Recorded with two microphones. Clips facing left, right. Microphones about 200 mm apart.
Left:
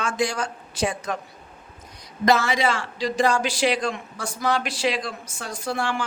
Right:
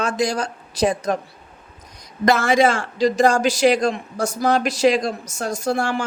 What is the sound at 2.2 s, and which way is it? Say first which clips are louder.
Speech: right 4 dB; 50° right (ahead or behind).